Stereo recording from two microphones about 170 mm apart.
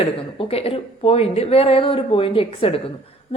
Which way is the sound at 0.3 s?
35° left (ahead or behind).